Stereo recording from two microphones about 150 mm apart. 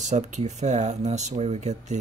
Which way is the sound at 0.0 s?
50° right (ahead or behind).